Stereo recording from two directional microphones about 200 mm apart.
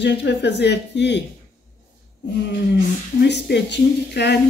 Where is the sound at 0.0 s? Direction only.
60° left (ahead or behind).